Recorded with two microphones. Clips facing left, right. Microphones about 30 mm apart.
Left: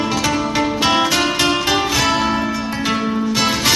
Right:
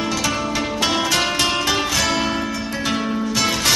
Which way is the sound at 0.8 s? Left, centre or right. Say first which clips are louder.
Left 2 dB; centre.